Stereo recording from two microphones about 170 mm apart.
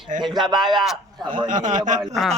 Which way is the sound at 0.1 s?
50° right (ahead or behind).